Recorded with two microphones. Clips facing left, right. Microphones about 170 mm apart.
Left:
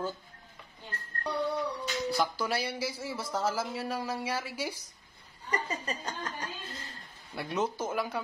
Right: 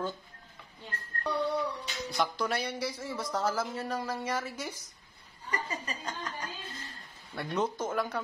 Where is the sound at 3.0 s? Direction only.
5° left (ahead or behind).